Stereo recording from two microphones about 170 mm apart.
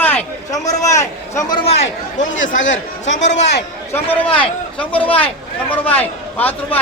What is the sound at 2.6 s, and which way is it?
Speech, 90° left.